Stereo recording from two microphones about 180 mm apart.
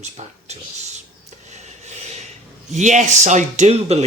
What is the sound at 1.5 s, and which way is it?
Rub, 40° right (ahead or behind).